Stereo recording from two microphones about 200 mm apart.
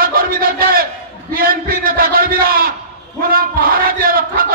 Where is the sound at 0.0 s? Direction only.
45° right (ahead or behind).